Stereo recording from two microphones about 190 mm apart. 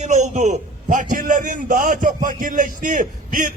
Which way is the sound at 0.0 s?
40° right (ahead or behind).